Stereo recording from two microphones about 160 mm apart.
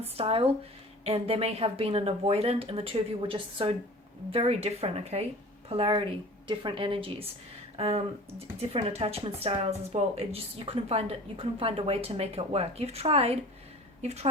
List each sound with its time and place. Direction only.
0.2 s speech: 35° right (ahead or behind)